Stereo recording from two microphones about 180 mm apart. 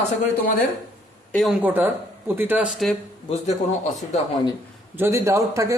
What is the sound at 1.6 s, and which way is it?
A man's voice, 10° right (ahead or behind).